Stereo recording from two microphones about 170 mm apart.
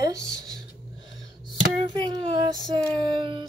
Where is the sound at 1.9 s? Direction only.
35° right (ahead or behind).